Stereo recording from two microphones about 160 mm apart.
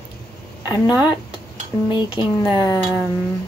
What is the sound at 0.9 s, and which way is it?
Speech, 10° right (ahead or behind).